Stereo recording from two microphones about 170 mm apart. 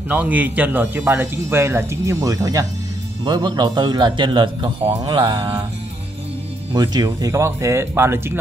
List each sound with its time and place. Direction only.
0.1 s a man's voice: 10° right (ahead or behind); by 5.7 s 25° right (ahead or behind)
6.7 s speech: 25° right (ahead or behind)